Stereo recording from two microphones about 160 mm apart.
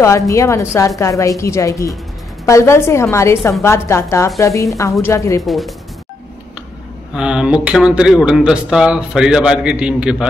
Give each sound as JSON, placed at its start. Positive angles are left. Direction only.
{"t": 0.3, "sound": "a woman's voice", "side_deg": 20}
{"t": 5.4, "sound": "speech", "side_deg": 0}
{"t": 7.2, "sound": "speech", "side_deg": -5}